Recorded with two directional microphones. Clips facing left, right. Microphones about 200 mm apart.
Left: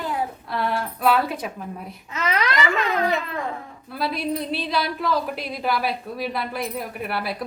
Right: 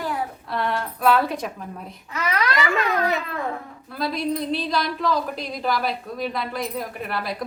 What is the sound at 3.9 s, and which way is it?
A woman's voice, 5° left (ahead or behind).